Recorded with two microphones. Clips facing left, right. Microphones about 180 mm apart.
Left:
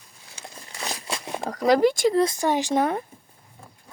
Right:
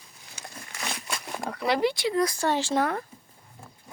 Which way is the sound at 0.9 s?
35° left (ahead or behind).